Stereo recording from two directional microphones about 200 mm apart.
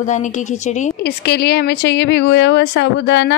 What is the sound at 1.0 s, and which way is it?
A woman's voice, 55° left (ahead or behind).